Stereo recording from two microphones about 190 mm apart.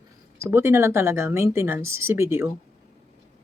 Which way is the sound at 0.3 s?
10° right (ahead or behind).